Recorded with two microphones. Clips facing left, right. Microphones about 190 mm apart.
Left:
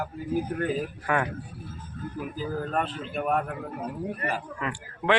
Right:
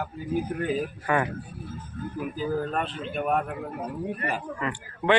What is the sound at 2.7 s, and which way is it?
A man's voice, centre (ahead or behind).